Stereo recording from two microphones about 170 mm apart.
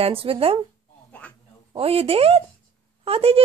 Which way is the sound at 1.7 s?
35° right (ahead or behind).